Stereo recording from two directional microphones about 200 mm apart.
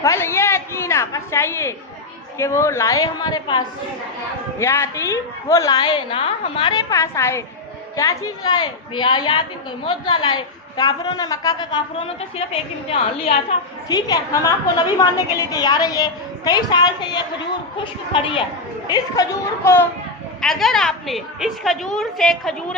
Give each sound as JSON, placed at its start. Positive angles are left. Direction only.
{"t": 0.0, "sound": "a sound", "side_deg": 15}
{"t": 2.4, "sound": "a woman's voice", "side_deg": 15}
{"t": 4.6, "sound": "a woman's voice", "side_deg": 15}
{"t": 13.9, "sound": "a woman's voice", "side_deg": 20}
{"t": 20.4, "sound": "a woman's voice", "side_deg": 0}